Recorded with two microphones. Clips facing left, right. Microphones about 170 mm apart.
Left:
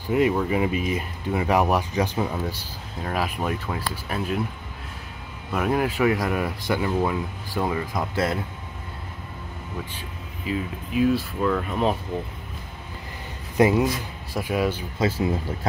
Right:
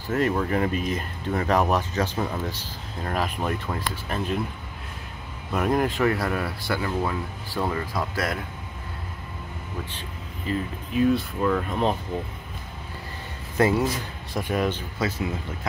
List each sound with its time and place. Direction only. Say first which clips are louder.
0.1 s speech: left 2 dB; 10° left (ahead or behind)
5.5 s speech: even; 5° left (ahead or behind); by 8.4 s 25° left (ahead or behind)
9.9 s speech: even; 5° left (ahead or behind)
13.6 s speech: left 2 dB; 15° left (ahead or behind)
15.0 s speech: left 6 dB; 30° left (ahead or behind)